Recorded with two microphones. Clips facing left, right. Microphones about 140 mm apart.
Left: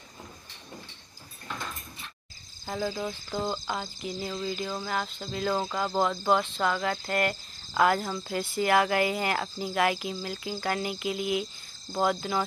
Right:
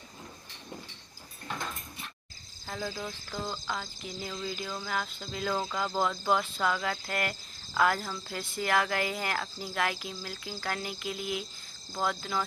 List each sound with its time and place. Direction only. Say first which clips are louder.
2.6 s cricket: left 5 dB; 10° left (ahead or behind)
3.3 s cricket: left 5 dB; 20° left (ahead or behind)
4.0 s speech: left 5 dB; 5° left (ahead or behind)
5.5 s speech: left 3 dB; 10° left (ahead or behind)